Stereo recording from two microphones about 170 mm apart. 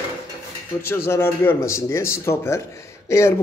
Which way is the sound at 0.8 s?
15° left (ahead or behind).